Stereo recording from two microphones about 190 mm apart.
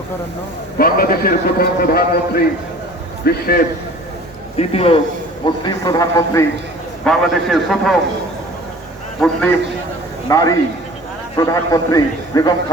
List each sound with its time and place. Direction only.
0.8 s a man's voice: 50° left (ahead or behind)
4.5 s a man's voice: 30° left (ahead or behind)
7.0 s a man's voice: centre (ahead or behind)
9.2 s a man's voice: 10° left (ahead or behind)